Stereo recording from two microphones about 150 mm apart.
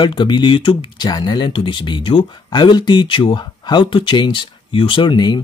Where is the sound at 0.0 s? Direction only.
30° left (ahead or behind).